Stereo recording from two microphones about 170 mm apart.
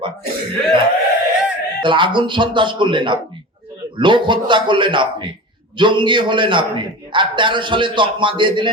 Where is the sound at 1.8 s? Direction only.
30° right (ahead or behind).